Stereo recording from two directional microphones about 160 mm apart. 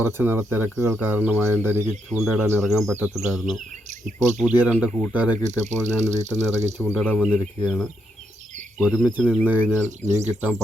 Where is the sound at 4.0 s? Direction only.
50° right (ahead or behind).